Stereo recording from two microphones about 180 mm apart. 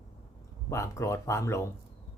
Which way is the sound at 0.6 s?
15° left (ahead or behind).